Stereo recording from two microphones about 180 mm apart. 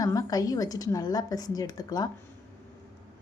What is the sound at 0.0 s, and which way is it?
A woman's voice, 20° left (ahead or behind).